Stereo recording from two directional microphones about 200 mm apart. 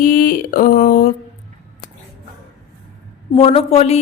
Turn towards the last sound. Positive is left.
turn(degrees=30)  # may be behind; listen again after turning